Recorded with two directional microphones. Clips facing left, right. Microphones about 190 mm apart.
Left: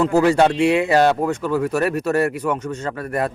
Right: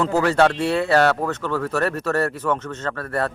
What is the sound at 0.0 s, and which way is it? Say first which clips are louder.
Speech: left 3 dB; 10° left (ahead or behind).